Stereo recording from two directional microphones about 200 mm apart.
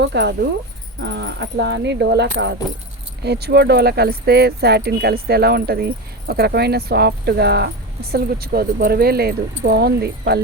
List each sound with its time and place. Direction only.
0.0 s speech: 55° right (ahead or behind)